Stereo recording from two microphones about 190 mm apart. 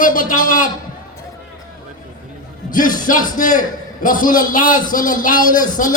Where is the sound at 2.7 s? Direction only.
45° left (ahead or behind).